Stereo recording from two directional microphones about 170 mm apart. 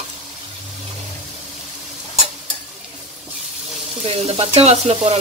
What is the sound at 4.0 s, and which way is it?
Frying, 35° right (ahead or behind).